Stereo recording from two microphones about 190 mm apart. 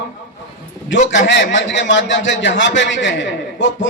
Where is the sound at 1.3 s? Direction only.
70° left (ahead or behind).